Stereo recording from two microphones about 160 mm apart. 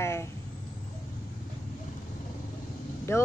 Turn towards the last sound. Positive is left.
turn(degrees=15)  # may be behind; listen again after turning